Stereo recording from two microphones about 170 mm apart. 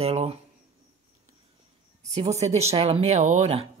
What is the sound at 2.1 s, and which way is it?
Speech, 40° right (ahead or behind).